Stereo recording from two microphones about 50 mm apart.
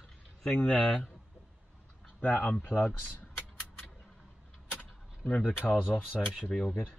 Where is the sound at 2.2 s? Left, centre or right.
Left.